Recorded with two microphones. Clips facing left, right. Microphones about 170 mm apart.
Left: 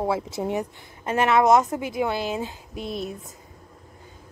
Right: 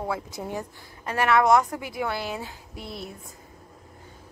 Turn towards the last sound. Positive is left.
turn(degrees=20)  # may be behind; listen again after turning